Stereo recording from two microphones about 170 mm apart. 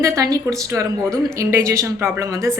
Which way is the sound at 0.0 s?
20° right (ahead or behind).